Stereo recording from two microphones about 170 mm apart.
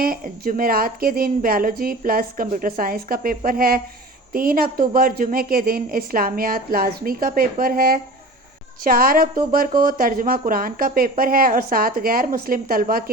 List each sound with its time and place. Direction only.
0.0 s a woman's voice: 60° right (ahead or behind)